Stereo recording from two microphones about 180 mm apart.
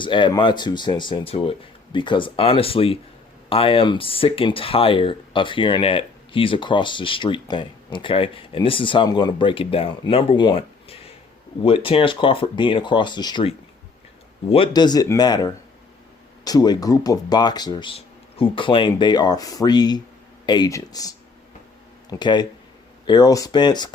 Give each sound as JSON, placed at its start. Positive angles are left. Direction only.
{"t": 0.0, "sound": "speech", "side_deg": 25}